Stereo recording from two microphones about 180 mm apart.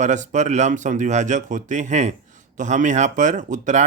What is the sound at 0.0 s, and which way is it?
Speech, 40° right (ahead or behind).